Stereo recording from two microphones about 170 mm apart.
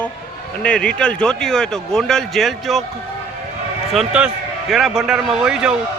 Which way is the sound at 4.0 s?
5° right (ahead or behind).